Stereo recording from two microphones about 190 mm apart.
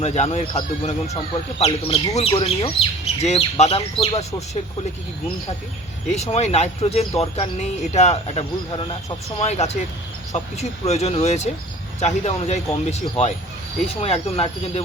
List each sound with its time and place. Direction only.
0.0 s speech: 35° left (ahead or behind)
6.1 s speech: 35° left (ahead or behind)